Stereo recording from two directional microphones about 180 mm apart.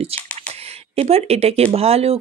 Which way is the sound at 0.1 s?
35° right (ahead or behind).